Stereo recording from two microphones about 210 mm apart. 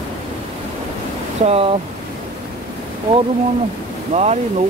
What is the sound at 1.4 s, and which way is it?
Speech, 30° right (ahead or behind).